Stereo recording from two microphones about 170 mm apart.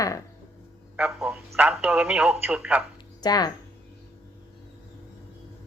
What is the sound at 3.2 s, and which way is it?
Speech, 25° left (ahead or behind).